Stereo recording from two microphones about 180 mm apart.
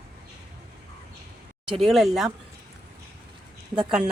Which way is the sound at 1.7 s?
Centre (ahead or behind).